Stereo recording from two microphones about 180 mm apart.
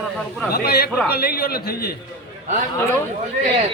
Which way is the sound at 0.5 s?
60° left (ahead or behind).